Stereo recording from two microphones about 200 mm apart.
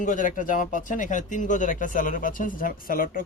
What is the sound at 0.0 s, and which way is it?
Speech, 40° left (ahead or behind).